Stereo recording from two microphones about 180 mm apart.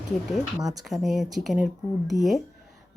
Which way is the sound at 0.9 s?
Centre (ahead or behind).